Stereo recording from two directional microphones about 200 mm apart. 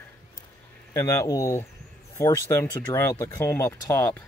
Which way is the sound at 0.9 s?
15° left (ahead or behind).